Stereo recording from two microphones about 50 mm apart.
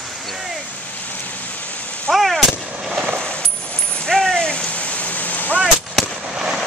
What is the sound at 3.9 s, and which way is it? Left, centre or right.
Rain, centre.